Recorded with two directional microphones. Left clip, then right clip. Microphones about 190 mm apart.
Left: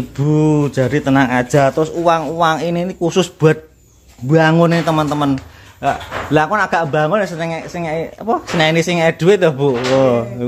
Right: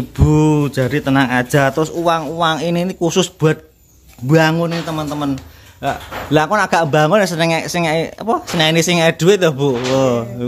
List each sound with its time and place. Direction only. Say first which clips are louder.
0.2 s speech: even; 10° right (ahead or behind)
4.6 s speech: left 7 dB; 30° left (ahead or behind)
5.8 s speech: left 3 dB; centre (ahead or behind)
6.3 s a man's voice: right 1 dB; 15° right (ahead or behind)
8.5 s speech: even; 5° right (ahead or behind)